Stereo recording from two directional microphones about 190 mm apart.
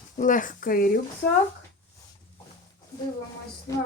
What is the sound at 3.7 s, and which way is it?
Music, 20° left (ahead or behind).